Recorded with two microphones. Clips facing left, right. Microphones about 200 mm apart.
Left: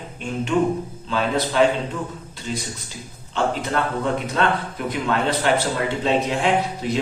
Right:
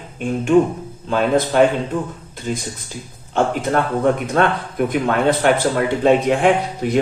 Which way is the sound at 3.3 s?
50° right (ahead or behind).